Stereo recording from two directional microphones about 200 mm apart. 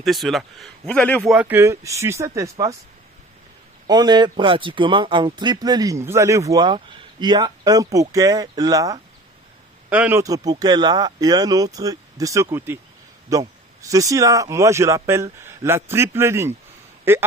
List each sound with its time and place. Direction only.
0.0 s a man's voice: centre (ahead or behind)
1.3 s speech: 10° right (ahead or behind)
3.8 s a man's voice: 20° right (ahead or behind)